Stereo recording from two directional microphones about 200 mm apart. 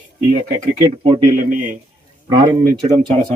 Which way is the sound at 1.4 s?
45° right (ahead or behind).